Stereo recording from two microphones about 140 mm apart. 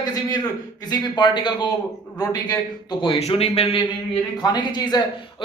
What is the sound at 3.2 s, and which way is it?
Speech, 50° left (ahead or behind).